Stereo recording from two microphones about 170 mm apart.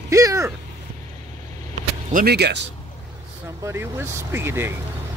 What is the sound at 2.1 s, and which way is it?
Speech, 70° right (ahead or behind).